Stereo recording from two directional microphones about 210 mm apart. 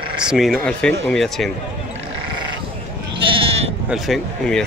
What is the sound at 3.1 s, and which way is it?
Goat, 25° right (ahead or behind).